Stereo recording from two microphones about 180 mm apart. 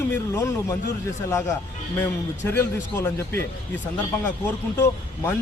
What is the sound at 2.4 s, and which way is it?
Speech, 15° left (ahead or behind).